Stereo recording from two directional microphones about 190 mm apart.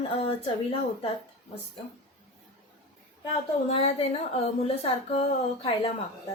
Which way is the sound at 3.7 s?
30° left (ahead or behind).